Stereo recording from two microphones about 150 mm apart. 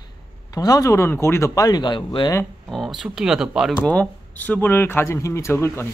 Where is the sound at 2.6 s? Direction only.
Centre (ahead or behind).